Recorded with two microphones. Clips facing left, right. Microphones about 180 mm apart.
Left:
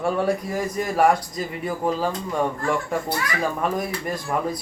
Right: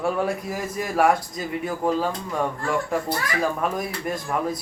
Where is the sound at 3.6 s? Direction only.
Centre (ahead or behind).